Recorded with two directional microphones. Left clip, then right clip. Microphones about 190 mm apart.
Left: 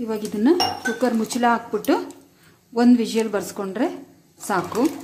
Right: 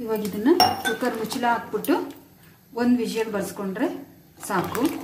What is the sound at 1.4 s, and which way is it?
A woman's voice, 50° left (ahead or behind).